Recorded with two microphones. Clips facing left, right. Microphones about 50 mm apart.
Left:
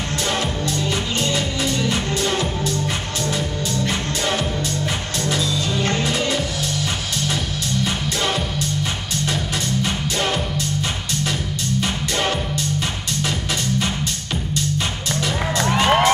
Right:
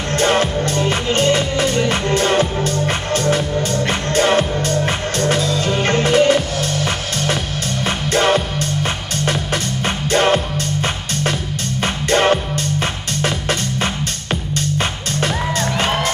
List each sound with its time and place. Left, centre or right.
0.2 s music: right
9.8 s music: right